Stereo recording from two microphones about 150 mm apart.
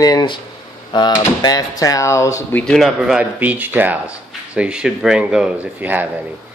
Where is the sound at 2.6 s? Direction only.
Centre (ahead or behind).